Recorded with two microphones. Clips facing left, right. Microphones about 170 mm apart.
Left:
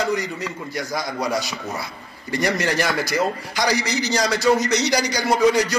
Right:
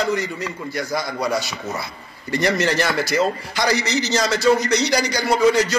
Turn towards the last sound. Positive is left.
turn(degrees=15)  # may be behind; listen again after turning